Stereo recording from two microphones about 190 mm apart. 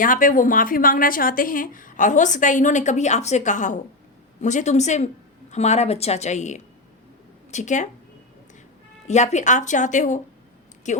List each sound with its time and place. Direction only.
0.0 s speech: 45° left (ahead or behind)
9.0 s speech: 35° left (ahead or behind)